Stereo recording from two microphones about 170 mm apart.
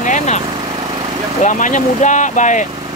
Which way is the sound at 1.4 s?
45° left (ahead or behind).